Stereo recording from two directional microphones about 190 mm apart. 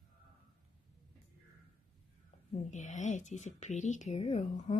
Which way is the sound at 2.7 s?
40° left (ahead or behind).